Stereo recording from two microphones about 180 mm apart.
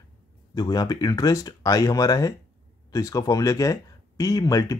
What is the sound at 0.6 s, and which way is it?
Speech, 20° left (ahead or behind).